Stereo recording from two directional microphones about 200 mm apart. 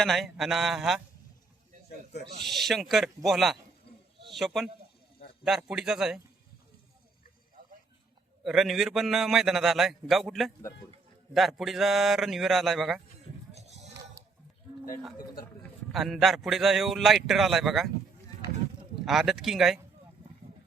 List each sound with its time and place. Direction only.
0.0 s a man's voice: centre (ahead or behind)
2.5 s a man's voice: centre (ahead or behind)
8.4 s a man's voice: centre (ahead or behind)
13.5 s music: 35° right (ahead or behind)
15.9 s a man's voice: centre (ahead or behind)
19.0 s a man's voice: centre (ahead or behind)